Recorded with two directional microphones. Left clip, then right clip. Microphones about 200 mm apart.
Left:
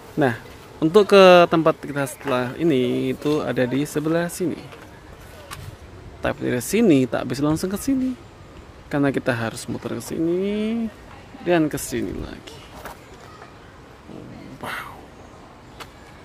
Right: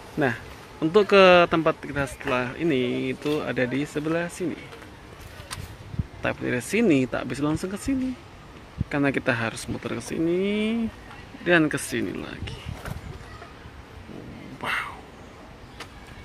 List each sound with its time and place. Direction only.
0.2 s speech: 20° left (ahead or behind)
6.2 s speech: 25° left (ahead or behind)
14.6 s a sound: 10° left (ahead or behind)